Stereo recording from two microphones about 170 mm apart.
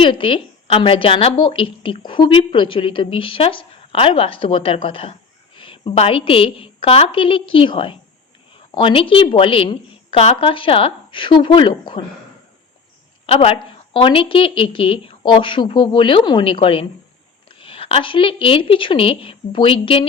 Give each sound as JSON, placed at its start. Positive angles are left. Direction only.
{"t": 0.0, "sound": "a woman's voice", "side_deg": 30}
{"t": 13.2, "sound": "a woman's voice", "side_deg": 35}